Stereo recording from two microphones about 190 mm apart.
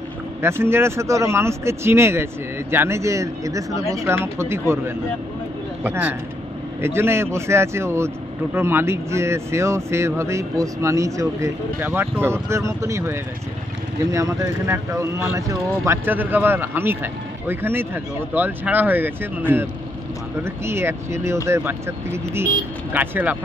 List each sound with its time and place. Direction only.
0.4 s speech: 15° right (ahead or behind)
20.4 s speech: 15° right (ahead or behind)